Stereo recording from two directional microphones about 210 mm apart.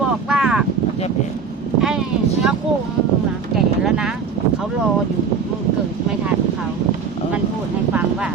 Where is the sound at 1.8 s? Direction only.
Centre (ahead or behind).